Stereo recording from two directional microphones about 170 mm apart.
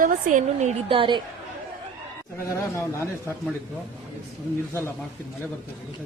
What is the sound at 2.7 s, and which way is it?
Speech, 15° left (ahead or behind).